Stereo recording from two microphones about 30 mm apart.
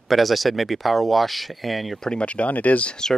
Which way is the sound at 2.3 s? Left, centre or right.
Left.